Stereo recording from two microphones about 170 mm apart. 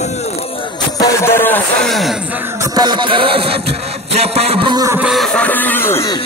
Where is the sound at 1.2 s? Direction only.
15° left (ahead or behind).